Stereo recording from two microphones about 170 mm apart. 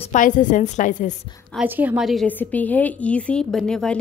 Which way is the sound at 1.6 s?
10° right (ahead or behind).